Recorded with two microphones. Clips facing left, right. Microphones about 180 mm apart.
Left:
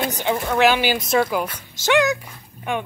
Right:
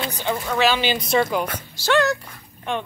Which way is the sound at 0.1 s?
15° left (ahead or behind).